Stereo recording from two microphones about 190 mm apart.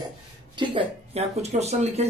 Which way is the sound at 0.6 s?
30° right (ahead or behind).